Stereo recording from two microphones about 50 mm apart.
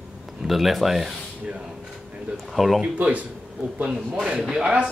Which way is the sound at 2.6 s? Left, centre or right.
Centre.